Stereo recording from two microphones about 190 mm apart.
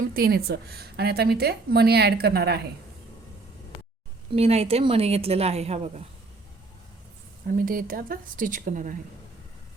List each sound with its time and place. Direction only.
0.0 s a woman's voice: 50° right (ahead or behind)
4.3 s a woman's voice: 30° right (ahead or behind)
7.4 s a woman's voice: 50° right (ahead or behind)